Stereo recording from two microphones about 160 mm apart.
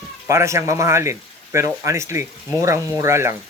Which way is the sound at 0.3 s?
20° right (ahead or behind).